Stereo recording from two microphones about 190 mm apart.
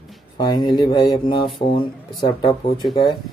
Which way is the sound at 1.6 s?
35° left (ahead or behind).